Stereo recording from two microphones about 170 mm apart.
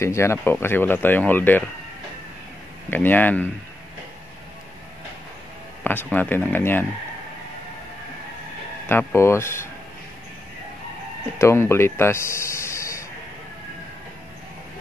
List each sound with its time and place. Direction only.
0.0 s speech: 15° left (ahead or behind)
2.9 s speech: 10° left (ahead or behind)
5.9 s speech: 10° left (ahead or behind)
8.8 s speech: 15° left (ahead or behind)
11.3 s speech: 15° left (ahead or behind)